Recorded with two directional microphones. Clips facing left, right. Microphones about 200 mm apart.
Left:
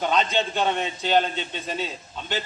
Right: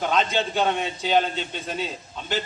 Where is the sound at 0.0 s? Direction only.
Centre (ahead or behind).